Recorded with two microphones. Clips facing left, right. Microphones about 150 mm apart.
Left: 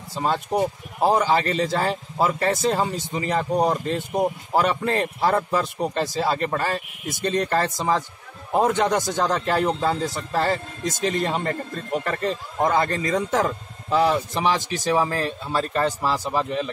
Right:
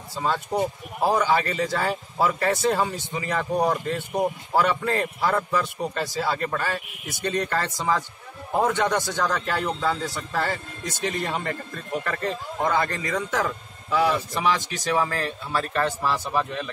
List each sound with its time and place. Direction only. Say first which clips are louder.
0.1 s a man's voice: left 2 dB; 20° left (ahead or behind)
12.6 s a man's voice: left 3 dB; 25° left (ahead or behind)